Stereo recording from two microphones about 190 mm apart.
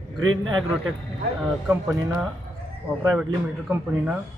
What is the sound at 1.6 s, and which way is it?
Speech, 5° right (ahead or behind).